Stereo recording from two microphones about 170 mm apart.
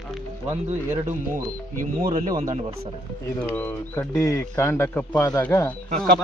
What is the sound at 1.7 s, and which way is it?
Speech, 55° right (ahead or behind).